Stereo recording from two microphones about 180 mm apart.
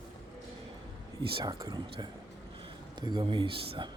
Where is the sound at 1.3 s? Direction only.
20° right (ahead or behind).